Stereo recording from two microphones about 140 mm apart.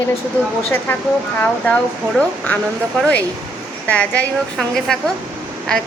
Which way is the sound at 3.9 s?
10° left (ahead or behind).